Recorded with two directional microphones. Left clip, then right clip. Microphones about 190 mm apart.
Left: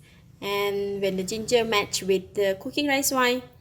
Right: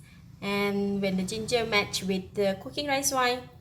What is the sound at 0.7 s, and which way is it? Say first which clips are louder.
Speech: left 4 dB; 40° left (ahead or behind).